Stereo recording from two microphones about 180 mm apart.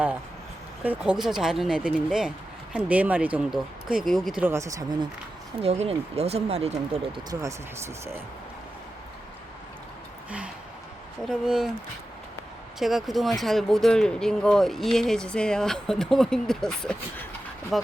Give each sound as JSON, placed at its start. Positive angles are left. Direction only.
{"t": 0.9, "sound": "speech", "side_deg": -5}
{"t": 5.6, "sound": "speech", "side_deg": -35}
{"t": 10.2, "sound": "a sound", "side_deg": -5}
{"t": 11.3, "sound": "speech", "side_deg": -5}
{"t": 12.8, "sound": "speech", "side_deg": 0}